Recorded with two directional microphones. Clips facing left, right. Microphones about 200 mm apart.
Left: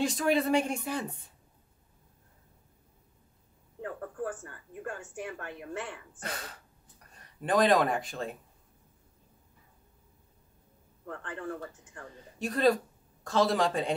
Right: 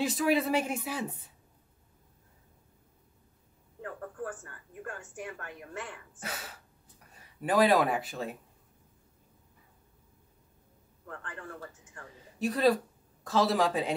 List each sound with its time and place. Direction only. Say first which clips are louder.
0.0 s speech: even; 5° right (ahead or behind)
4.2 s a sound: left 5 dB; 30° left (ahead or behind)
6.1 s speech: even; 5° right (ahead or behind)
12.4 s speech: even; 5° right (ahead or behind)